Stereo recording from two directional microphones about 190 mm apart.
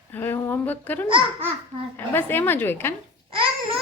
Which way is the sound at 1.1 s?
25° right (ahead or behind).